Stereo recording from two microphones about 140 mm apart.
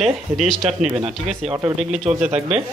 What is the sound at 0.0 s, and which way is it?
Speech, centre (ahead or behind).